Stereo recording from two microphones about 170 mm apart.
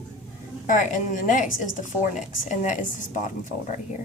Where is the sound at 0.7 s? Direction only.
50° left (ahead or behind).